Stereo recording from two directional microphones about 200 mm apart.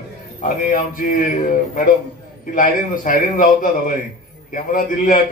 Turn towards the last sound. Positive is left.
turn(degrees=45)  # may be behind; listen again after turning